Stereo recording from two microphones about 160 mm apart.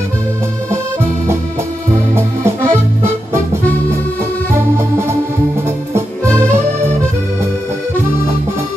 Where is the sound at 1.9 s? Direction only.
15° right (ahead or behind).